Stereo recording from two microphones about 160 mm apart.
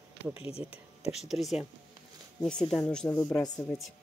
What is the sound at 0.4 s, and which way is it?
Speech, 35° left (ahead or behind).